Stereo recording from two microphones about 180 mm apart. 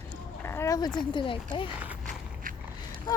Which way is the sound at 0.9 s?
25° left (ahead or behind).